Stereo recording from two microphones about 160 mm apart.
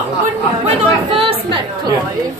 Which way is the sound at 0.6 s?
35° right (ahead or behind).